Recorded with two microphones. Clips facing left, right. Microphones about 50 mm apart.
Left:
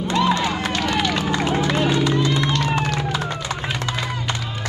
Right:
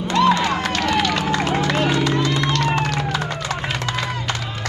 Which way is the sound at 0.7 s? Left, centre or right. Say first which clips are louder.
Right 1 dB; right.